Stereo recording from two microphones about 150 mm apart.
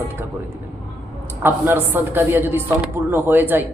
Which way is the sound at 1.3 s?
15° right (ahead or behind).